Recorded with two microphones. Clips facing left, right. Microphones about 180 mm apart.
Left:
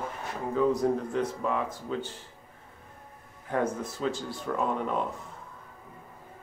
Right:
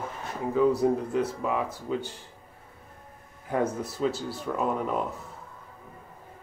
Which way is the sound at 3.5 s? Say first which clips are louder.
Right 1 dB; 10° right (ahead or behind).